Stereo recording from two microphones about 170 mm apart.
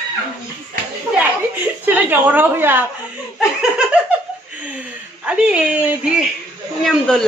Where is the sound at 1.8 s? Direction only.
10° right (ahead or behind).